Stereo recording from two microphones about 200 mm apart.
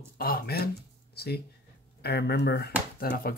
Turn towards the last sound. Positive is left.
turn(degrees=50)  # may be behind; listen again after turning